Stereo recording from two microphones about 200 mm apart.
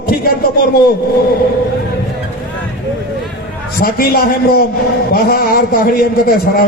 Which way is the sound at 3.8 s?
50° left (ahead or behind).